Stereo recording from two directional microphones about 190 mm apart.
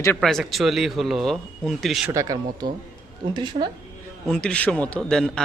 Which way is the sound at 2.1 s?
20° right (ahead or behind).